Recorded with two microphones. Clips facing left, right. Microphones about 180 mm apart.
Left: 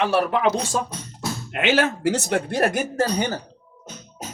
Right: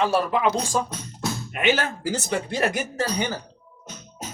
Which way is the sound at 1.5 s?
80° left.